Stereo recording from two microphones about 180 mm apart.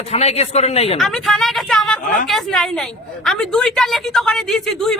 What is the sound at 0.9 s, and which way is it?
A woman's voice, centre (ahead or behind).